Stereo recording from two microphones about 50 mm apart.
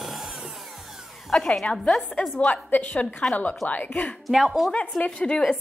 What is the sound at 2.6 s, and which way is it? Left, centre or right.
A woman's voice, left.